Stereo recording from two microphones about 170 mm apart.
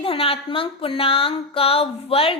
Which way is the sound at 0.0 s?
35° left (ahead or behind).